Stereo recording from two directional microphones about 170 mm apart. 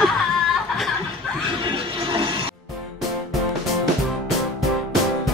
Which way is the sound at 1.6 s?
35° right (ahead or behind).